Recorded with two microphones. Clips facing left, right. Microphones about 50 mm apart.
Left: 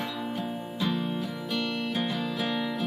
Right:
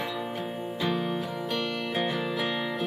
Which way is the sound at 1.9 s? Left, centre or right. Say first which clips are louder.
Right 1 dB; centre.